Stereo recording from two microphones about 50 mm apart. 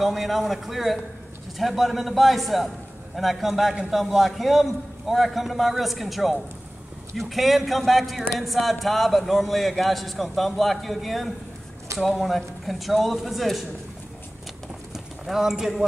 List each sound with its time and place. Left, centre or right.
0.0 s a man's voice: centre
15.2 s a man's voice: centre